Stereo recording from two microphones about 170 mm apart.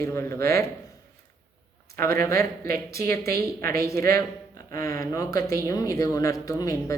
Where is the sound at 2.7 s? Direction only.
65° right (ahead or behind).